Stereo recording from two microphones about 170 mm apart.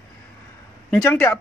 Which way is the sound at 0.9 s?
10° left (ahead or behind).